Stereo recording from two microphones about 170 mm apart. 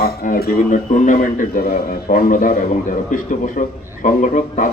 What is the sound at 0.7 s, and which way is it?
A man's voice, 45° left (ahead or behind).